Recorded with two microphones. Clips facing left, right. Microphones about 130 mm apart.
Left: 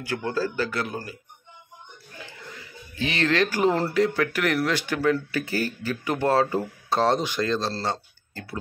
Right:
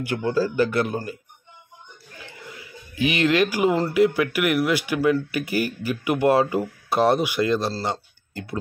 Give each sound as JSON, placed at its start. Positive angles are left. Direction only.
{"t": 0.0, "sound": "speech", "side_deg": -15}
{"t": 2.4, "sound": "a sound", "side_deg": -10}
{"t": 3.9, "sound": "speech", "side_deg": -10}